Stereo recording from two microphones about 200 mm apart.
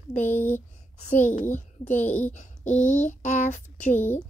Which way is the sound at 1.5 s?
35° left (ahead or behind).